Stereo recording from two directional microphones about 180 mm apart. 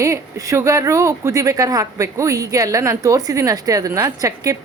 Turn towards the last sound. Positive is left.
turn(degrees=-20)  # may be behind; listen again after turning